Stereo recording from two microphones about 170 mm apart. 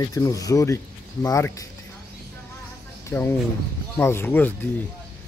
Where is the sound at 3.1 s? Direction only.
10° left (ahead or behind).